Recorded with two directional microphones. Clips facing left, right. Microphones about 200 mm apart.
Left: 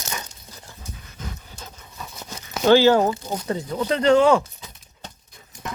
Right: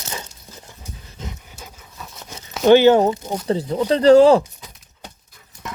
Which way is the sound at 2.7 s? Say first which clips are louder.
Right 3 dB; 20° right (ahead or behind).